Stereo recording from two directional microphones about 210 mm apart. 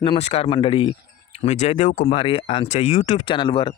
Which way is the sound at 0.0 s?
30° left (ahead or behind).